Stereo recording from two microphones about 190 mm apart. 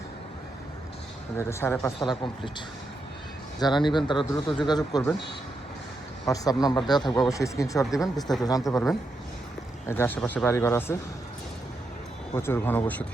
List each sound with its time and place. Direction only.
1.4 s speech: 15° left (ahead or behind)
2.0 s speech: 25° left (ahead or behind)
3.6 s speech: 25° left (ahead or behind)
6.2 s speech: 20° left (ahead or behind)
7.9 s speech: centre (ahead or behind)
8.4 s speech: 20° left (ahead or behind)
9.8 s speech: 10° left (ahead or behind)
12.3 s speech: 10° left (ahead or behind)